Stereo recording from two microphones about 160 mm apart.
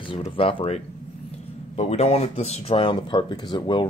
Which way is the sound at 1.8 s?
40° left (ahead or behind).